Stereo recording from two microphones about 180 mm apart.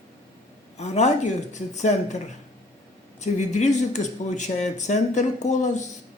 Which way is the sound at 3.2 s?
40° left (ahead or behind).